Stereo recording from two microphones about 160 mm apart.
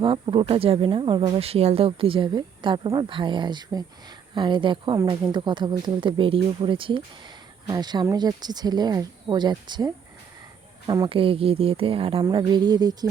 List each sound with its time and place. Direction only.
0.0 s speech: 30° right (ahead or behind)
11.1 s speech: 35° right (ahead or behind)